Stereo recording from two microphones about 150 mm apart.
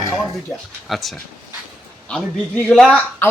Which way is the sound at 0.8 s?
Centre (ahead or behind).